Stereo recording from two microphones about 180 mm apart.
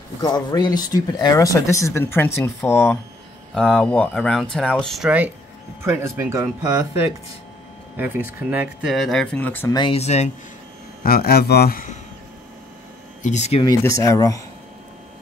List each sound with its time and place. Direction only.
0.2 s speech: 25° left (ahead or behind)
9.8 s speech: 30° left (ahead or behind)
11.1 s a man's voice: 55° left (ahead or behind)
13.2 s speech: 40° left (ahead or behind)
14.0 s speech: 20° left (ahead or behind)